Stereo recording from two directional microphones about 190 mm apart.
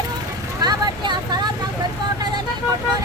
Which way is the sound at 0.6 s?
20° right (ahead or behind).